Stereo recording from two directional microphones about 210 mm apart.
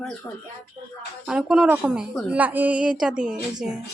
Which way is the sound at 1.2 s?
5° right (ahead or behind).